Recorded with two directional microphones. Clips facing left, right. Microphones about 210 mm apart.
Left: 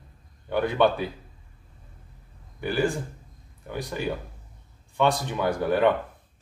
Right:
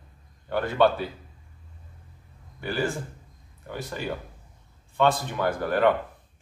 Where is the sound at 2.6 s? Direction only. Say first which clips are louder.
Left 3 dB; 15° left (ahead or behind).